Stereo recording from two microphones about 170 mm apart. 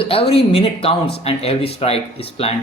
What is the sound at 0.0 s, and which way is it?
Speech, 35° left (ahead or behind).